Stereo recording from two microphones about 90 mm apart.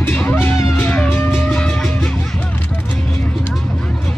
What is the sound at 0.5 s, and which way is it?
Music, 30° left (ahead or behind).